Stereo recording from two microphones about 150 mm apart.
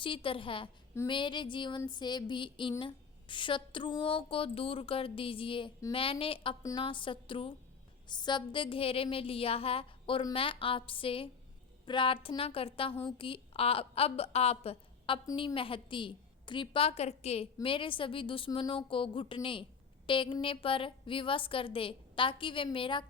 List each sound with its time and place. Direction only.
0.0 s a woman's voice: 35° left (ahead or behind)
6.6 s a woman's voice: 20° left (ahead or behind)
6.8 s a woman's voice: 35° left (ahead or behind)